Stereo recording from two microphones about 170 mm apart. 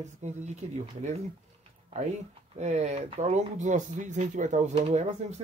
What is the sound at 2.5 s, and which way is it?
Speech, 40° right (ahead or behind).